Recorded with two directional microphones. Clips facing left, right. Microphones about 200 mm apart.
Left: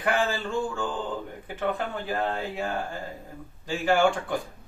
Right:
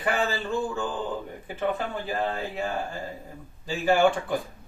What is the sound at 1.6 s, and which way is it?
Speech, centre (ahead or behind).